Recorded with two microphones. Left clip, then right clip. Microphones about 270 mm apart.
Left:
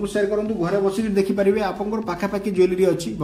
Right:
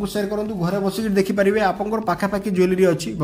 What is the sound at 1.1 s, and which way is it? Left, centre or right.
A man's voice, centre.